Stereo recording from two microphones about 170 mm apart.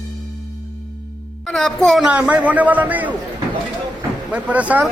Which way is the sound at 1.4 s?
5° left (ahead or behind).